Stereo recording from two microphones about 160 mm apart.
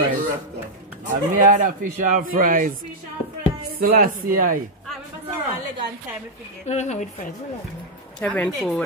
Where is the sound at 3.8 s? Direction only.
60° right (ahead or behind).